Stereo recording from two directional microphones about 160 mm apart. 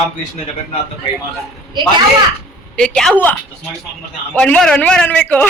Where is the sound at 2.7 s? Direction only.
5° left (ahead or behind).